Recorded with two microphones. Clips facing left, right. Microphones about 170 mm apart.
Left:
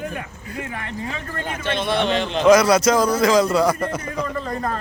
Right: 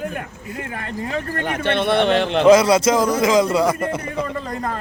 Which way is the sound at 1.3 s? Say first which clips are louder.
Right 4 dB; 65° right (ahead or behind).